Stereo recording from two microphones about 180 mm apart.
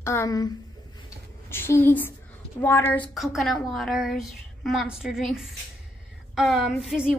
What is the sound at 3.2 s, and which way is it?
A woman's voice, centre (ahead or behind).